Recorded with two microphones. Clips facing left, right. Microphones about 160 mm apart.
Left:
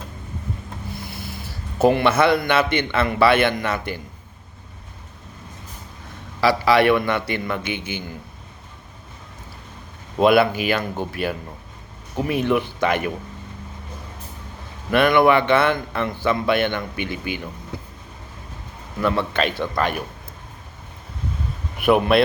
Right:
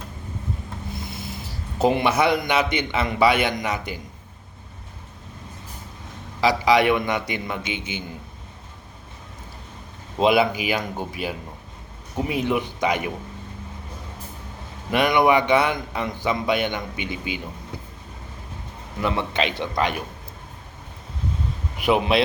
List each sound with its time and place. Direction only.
0.9 s a sound: 20° right (ahead or behind)
1.8 s a man's voice: 15° right (ahead or behind)
6.4 s a man's voice: 15° right (ahead or behind)
10.2 s speech: 60° left (ahead or behind)
10.5 s a man's voice: 15° right (ahead or behind)
12.5 s a man's voice: 15° right (ahead or behind)
14.8 s a man's voice: 15° right (ahead or behind)
19.0 s a man's voice: 20° right (ahead or behind)
21.8 s speech: 55° left (ahead or behind)